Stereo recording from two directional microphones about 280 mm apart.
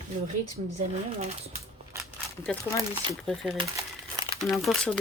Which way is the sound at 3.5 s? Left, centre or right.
Centre.